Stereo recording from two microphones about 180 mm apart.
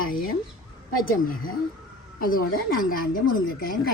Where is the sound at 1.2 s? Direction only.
50° left (ahead or behind).